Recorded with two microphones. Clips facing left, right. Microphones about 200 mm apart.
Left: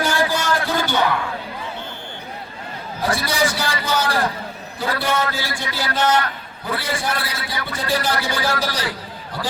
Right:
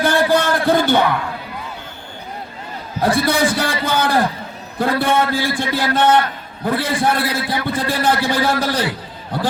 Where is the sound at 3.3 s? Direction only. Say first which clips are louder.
Right 4 dB; 55° right (ahead or behind).